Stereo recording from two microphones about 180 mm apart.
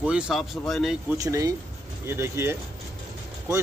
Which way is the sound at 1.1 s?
15° right (ahead or behind).